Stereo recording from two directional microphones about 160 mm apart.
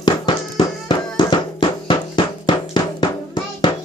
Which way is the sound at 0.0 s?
30° left (ahead or behind).